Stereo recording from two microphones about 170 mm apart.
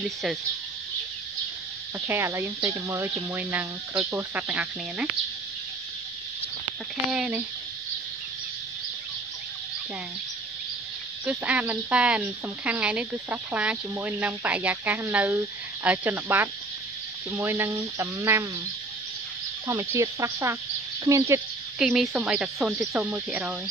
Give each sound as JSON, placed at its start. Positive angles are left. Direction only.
{"t": 0.0, "sound": "speech", "side_deg": -5}
{"t": 2.0, "sound": "speech", "side_deg": -15}
{"t": 7.1, "sound": "speech", "side_deg": -5}
{"t": 11.2, "sound": "speech", "side_deg": -5}
{"t": 19.7, "sound": "speech", "side_deg": -15}
{"t": 21.7, "sound": "speech", "side_deg": 0}